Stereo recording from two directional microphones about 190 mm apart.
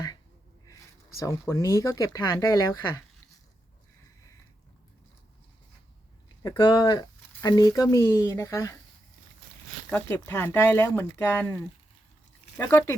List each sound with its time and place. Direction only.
0.7 s speech: 15° left (ahead or behind)
6.6 s speech: 20° left (ahead or behind)
9.9 s speech: 10° left (ahead or behind)
12.5 s speech: 15° left (ahead or behind)